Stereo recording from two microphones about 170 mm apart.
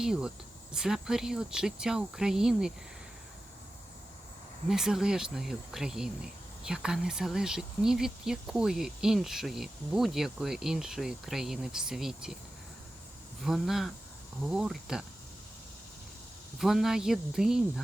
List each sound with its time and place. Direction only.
0.0 s speech: 5° right (ahead or behind)
4.7 s speech: 5° right (ahead or behind)
13.4 s speech: centre (ahead or behind)
16.6 s speech: centre (ahead or behind)